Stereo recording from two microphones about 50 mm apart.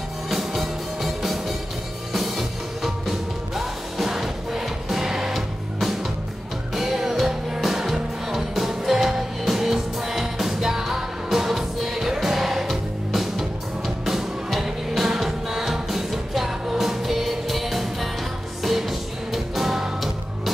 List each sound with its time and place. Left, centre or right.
0.3 s music: centre